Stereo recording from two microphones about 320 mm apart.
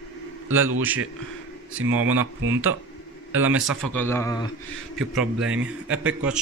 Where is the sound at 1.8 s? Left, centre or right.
Right.